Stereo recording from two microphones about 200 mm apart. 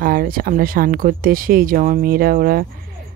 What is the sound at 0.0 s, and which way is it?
Speech, 50° right (ahead or behind).